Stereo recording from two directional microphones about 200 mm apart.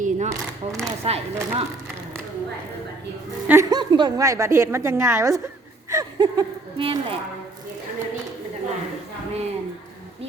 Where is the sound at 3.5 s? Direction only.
15° right (ahead or behind).